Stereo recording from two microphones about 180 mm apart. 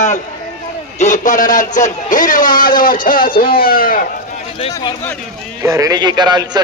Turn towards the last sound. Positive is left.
turn(degrees=-25)  # may be behind; listen again after turning